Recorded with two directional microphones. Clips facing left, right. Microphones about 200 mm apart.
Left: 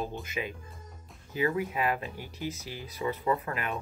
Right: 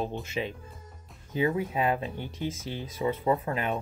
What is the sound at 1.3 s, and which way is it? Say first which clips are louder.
Speech: right 2 dB; 30° right (ahead or behind).